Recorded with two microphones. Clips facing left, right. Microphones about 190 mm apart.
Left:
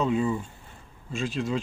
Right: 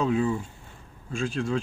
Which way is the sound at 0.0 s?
Centre (ahead or behind).